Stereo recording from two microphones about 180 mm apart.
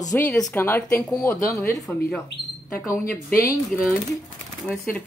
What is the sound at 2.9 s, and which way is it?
Speech, 15° left (ahead or behind).